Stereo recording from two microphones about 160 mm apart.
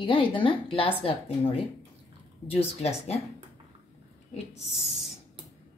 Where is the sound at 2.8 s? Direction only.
40° left (ahead or behind).